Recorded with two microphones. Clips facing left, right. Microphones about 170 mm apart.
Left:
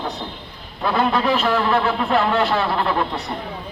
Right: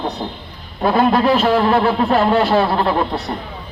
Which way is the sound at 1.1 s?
35° right (ahead or behind).